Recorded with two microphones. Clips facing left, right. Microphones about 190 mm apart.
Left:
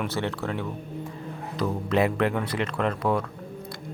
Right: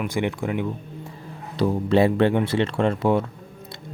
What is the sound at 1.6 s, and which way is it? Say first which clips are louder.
Speech: right 5 dB; 30° right (ahead or behind).